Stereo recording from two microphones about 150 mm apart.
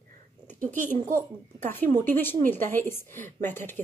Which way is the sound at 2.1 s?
15° left (ahead or behind).